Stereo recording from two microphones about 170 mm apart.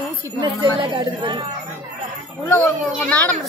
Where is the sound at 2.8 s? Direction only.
5° left (ahead or behind).